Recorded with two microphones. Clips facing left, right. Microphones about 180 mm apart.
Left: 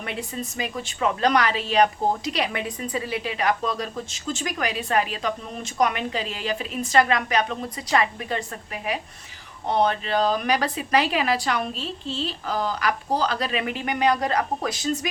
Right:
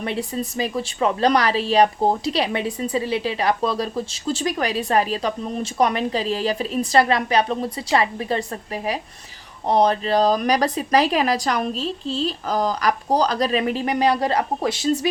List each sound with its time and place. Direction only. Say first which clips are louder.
0.0 s a woman's voice: right 6 dB; 35° right (ahead or behind)